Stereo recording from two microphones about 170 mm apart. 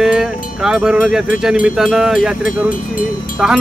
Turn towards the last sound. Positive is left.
turn(degrees=0)  # may be behind; listen again after turning